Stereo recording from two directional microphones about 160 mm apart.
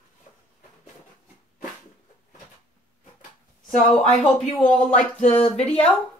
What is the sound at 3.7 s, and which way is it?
Speech, 5° left (ahead or behind).